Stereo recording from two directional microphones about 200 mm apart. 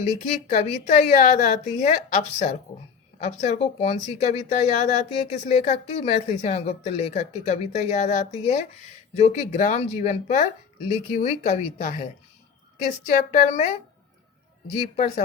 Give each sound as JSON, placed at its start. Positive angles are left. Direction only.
{"t": 0.3, "sound": "speech", "side_deg": 35}
{"t": 14.8, "sound": "speech", "side_deg": 35}